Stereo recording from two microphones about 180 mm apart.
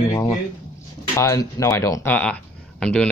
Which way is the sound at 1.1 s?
15° left (ahead or behind).